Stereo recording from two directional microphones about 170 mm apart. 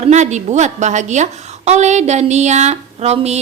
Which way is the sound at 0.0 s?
45° right (ahead or behind).